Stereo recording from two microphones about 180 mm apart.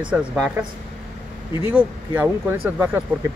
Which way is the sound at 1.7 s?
10° right (ahead or behind).